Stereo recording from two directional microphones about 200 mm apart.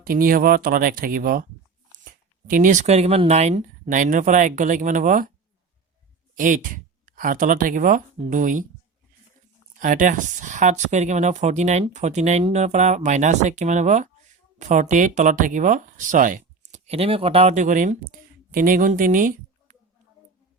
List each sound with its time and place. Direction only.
0.0 s speech: 45° right (ahead or behind)
2.5 s speech: 40° right (ahead or behind)
6.3 s speech: 40° right (ahead or behind)
9.8 s a woman's voice: 40° right (ahead or behind)